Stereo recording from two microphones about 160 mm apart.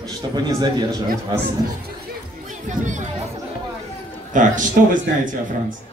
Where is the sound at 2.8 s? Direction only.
50° right (ahead or behind).